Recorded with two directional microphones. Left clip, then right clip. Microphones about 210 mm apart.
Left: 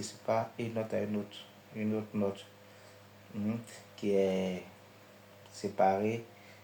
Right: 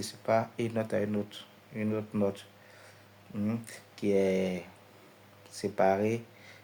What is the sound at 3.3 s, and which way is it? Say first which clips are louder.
Speech: right 3 dB; 50° right (ahead or behind).